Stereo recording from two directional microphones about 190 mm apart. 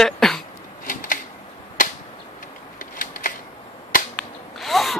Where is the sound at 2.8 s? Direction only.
45° left (ahead or behind).